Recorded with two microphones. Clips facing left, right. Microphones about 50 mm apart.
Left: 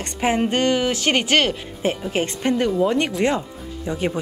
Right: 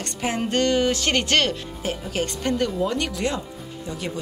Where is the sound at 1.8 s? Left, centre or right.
Left.